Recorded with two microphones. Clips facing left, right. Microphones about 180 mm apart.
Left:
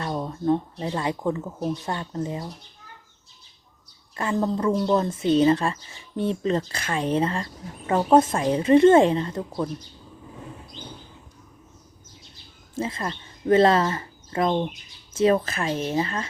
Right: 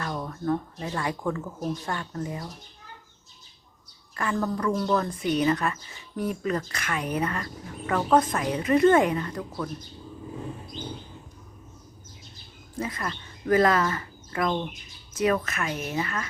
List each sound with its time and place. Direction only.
0.0 s a woman's voice: 25° left (ahead or behind)
4.1 s a woman's voice: 25° left (ahead or behind)
12.7 s a woman's voice: 25° left (ahead or behind)